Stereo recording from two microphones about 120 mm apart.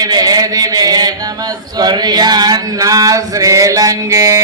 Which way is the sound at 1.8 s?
35° right (ahead or behind).